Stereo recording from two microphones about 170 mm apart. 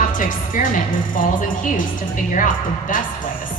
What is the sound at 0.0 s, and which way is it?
Speech, 50° left (ahead or behind).